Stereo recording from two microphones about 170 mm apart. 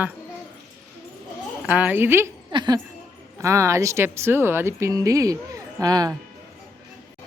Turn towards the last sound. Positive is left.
turn(degrees=-20)  # may be behind; listen again after turning